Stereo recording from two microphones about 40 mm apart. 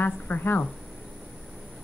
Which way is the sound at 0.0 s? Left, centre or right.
Left.